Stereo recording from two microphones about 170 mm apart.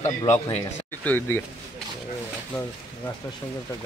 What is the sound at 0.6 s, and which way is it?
Speech, 15° left (ahead or behind).